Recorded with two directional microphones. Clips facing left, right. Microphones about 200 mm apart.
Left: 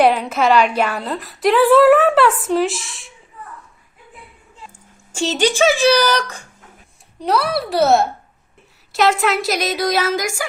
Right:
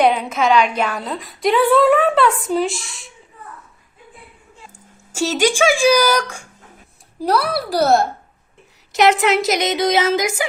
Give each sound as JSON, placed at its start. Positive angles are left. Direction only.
{"t": 0.0, "sound": "a woman's voice", "side_deg": 5}
{"t": 5.1, "sound": "speech", "side_deg": -10}
{"t": 7.2, "sound": "a woman's voice", "side_deg": 0}
{"t": 8.9, "sound": "speech", "side_deg": -20}